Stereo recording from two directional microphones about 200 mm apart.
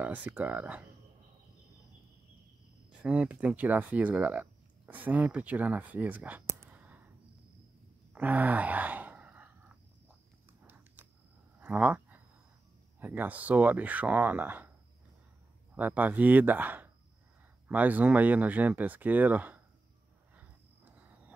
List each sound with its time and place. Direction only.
0.0 s speech: 10° right (ahead or behind)
3.0 s speech: 5° right (ahead or behind)
8.1 s sigh: 10° right (ahead or behind)
10.6 s a sound: 10° right (ahead or behind)
13.0 s speech: 10° right (ahead or behind)
15.7 s speech: 10° right (ahead or behind)
20.3 s a sound: 5° right (ahead or behind)